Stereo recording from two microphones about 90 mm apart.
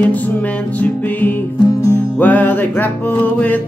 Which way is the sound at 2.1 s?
15° left (ahead or behind).